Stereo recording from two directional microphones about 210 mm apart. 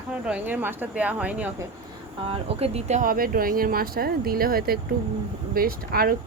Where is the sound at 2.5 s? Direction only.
30° right (ahead or behind).